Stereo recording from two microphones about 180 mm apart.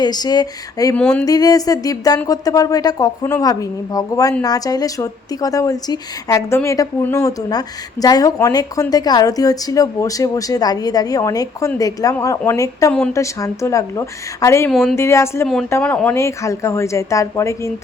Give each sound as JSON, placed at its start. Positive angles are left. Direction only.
{"t": 0.0, "sound": "a woman's voice", "side_deg": 20}
{"t": 0.9, "sound": "speech", "side_deg": 5}
{"t": 1.2, "sound": "a woman's voice", "side_deg": 20}
{"t": 14.7, "sound": "speech", "side_deg": 0}
{"t": 14.9, "sound": "a woman's voice", "side_deg": 15}